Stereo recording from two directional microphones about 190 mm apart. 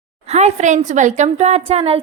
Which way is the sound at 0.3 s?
35° right (ahead or behind).